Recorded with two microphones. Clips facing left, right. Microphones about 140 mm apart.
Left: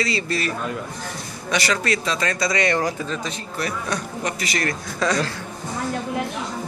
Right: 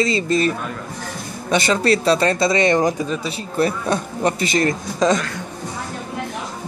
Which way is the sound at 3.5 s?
30° right (ahead or behind).